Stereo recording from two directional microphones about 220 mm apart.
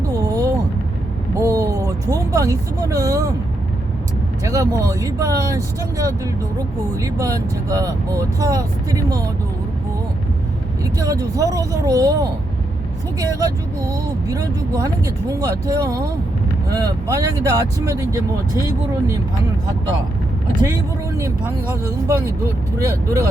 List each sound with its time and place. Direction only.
0.1 s a sound: 15° right (ahead or behind)
1.4 s vehicle: 15° right (ahead or behind)
4.4 s speech: 15° right (ahead or behind)
10.9 s speech: 15° right (ahead or behind)
21.2 s speech: 10° right (ahead or behind)